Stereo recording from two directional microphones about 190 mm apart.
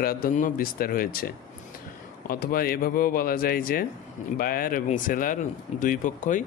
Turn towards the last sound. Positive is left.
turn(degrees=45)  # may be behind; listen again after turning